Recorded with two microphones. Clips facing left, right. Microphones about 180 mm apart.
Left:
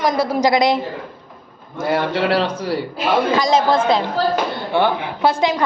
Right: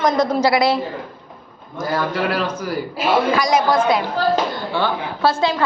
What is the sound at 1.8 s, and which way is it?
A woman's voice, 25° left (ahead or behind).